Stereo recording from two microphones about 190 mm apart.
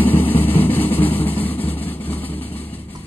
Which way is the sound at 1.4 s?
10° left (ahead or behind).